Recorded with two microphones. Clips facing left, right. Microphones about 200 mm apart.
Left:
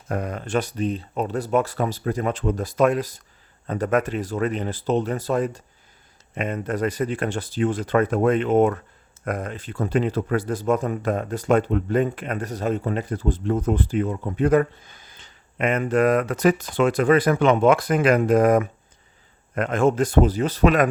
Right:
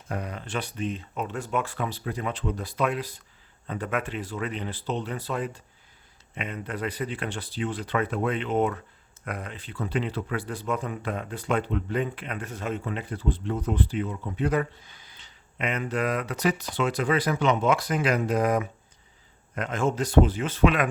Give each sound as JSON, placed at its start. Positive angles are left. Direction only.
{"t": 0.1, "sound": "speech", "side_deg": 50}